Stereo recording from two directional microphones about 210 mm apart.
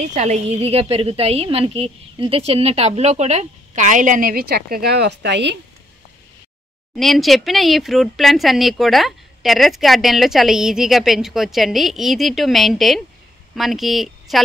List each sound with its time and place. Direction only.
0.1 s a woman's voice: 30° right (ahead or behind); by 5.6 s 55° right (ahead or behind)
7.0 s speech: centre (ahead or behind)